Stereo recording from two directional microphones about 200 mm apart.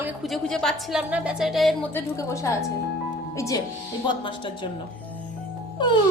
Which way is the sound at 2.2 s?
15° left (ahead or behind).